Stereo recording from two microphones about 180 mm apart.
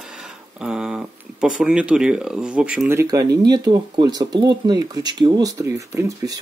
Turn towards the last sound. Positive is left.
turn(degrees=-20)  # may be behind; listen again after turning